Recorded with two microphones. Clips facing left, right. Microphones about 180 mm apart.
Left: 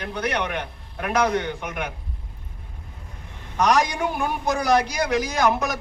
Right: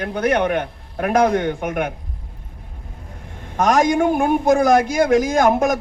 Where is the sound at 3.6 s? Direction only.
50° right (ahead or behind).